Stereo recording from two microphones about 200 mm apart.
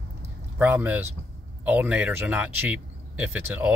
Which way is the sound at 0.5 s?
10° right (ahead or behind).